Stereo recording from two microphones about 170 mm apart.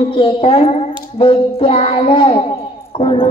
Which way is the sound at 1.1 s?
30° left (ahead or behind).